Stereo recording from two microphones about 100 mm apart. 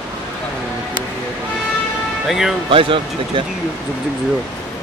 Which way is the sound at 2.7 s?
60° right (ahead or behind).